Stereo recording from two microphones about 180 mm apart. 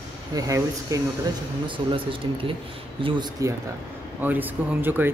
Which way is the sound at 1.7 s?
30° right (ahead or behind).